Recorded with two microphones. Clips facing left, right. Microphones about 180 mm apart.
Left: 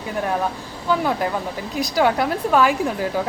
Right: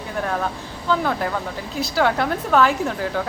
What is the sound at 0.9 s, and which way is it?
A woman's voice, 10° left (ahead or behind).